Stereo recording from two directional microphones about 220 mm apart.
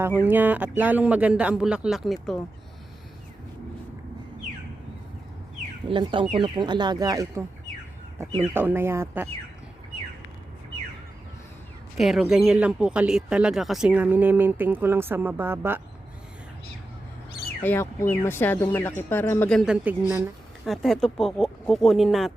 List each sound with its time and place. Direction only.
0.0 s speech: 10° right (ahead or behind)
5.9 s speech: 20° right (ahead or behind)
11.9 s speech: centre (ahead or behind)
17.6 s speech: 10° left (ahead or behind)